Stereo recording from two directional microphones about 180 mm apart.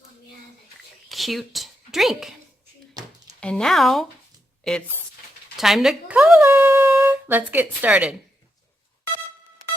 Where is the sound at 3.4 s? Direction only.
5° left (ahead or behind).